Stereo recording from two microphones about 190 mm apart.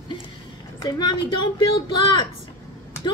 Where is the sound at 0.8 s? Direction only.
20° left (ahead or behind).